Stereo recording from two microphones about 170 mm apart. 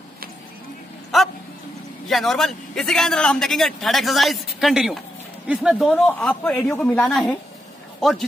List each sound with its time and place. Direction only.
1.1 s dog: centre (ahead or behind)
2.0 s a man's voice: centre (ahead or behind)